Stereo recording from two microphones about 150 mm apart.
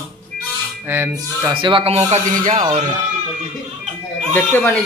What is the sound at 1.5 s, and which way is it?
Speech, 35° right (ahead or behind).